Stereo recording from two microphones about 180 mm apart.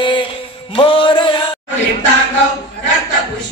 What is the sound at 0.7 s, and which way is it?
Mantra, 30° left (ahead or behind).